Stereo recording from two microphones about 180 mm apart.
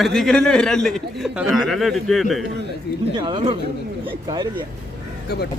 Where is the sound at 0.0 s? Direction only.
5° left (ahead or behind).